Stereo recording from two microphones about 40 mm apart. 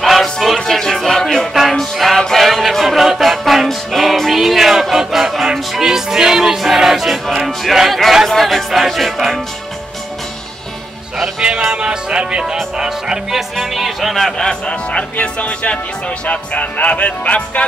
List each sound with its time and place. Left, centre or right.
0.0 s music: centre
1.5 s music: centre
8.4 s music: centre
11.1 s music: right
13.3 s music: centre
14.1 s speech: centre; by 17.6 s left